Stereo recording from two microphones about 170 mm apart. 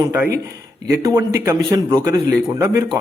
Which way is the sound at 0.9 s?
15° right (ahead or behind).